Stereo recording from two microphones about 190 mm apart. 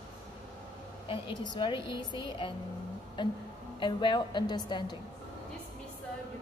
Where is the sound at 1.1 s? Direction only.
25° left (ahead or behind).